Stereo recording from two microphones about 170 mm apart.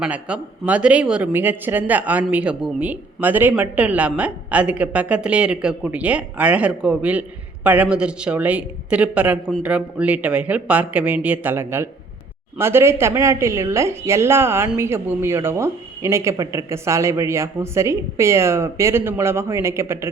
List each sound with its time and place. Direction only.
0.0 s speech: 5° right (ahead or behind)